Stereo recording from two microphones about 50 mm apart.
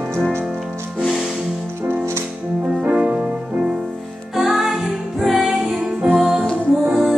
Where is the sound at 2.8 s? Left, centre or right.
Right.